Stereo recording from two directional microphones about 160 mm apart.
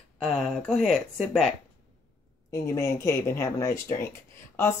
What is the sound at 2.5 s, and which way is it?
Speech, 15° left (ahead or behind).